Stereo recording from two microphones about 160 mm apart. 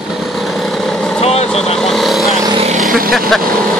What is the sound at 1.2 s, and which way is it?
Vehicle, 40° left (ahead or behind).